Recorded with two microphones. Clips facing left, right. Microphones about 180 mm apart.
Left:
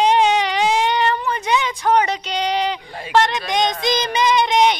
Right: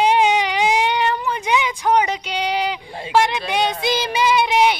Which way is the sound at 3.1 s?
10° right (ahead or behind).